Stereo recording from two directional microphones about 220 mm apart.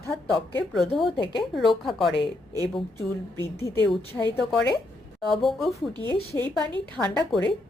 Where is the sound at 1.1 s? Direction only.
20° left (ahead or behind).